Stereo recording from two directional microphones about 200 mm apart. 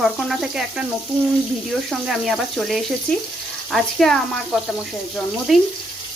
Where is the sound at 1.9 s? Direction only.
Centre (ahead or behind).